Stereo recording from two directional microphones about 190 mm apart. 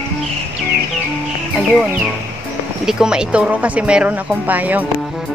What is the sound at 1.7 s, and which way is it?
Speech, 5° right (ahead or behind).